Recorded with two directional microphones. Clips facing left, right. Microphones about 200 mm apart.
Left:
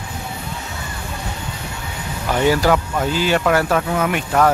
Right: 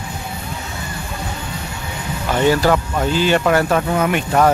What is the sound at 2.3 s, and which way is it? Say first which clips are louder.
Speech: right 1 dB; 10° left (ahead or behind).